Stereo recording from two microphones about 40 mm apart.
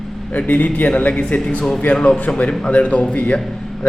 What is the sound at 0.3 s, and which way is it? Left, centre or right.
Speech, left.